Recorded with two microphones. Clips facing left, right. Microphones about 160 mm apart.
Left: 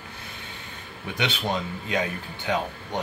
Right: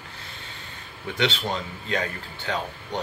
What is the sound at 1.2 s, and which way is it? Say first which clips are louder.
Speech: right 1 dB; 15° left (ahead or behind).